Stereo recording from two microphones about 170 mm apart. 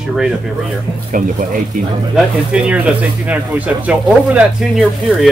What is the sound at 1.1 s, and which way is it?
Speech, 50° right (ahead or behind).